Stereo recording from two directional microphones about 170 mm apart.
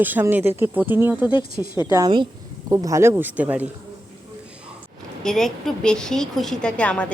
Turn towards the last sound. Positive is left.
turn(degrees=5)  # may be behind; listen again after turning